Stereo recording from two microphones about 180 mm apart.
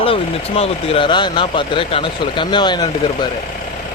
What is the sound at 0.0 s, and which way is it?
Speech, 30° left (ahead or behind).